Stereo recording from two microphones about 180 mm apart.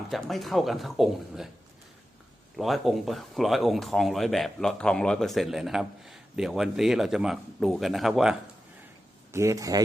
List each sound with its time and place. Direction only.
0.1 s speech: centre (ahead or behind)
2.6 s speech: centre (ahead or behind)
9.3 s speech: 15° right (ahead or behind)